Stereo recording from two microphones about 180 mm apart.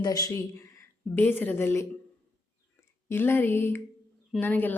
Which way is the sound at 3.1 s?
10° left (ahead or behind).